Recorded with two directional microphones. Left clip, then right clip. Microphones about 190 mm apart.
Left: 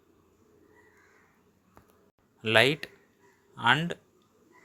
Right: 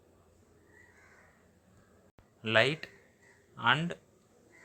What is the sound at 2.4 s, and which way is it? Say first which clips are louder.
Speech: left 4 dB; 20° left (ahead or behind).